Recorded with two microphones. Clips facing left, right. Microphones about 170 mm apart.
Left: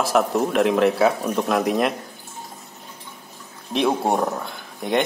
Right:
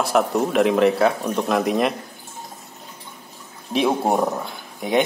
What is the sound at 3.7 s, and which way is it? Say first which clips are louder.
Speech: right 1 dB; centre (ahead or behind).